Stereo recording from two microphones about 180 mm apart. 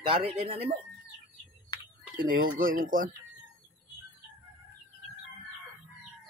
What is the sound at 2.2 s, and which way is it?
Speech, 50° right (ahead or behind).